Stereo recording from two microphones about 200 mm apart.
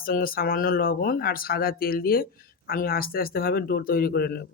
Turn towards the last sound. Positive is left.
turn(degrees=50)  # may be behind; listen again after turning